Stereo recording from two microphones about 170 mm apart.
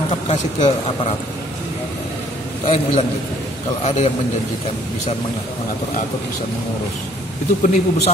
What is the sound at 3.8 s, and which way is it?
Speech, 40° left (ahead or behind).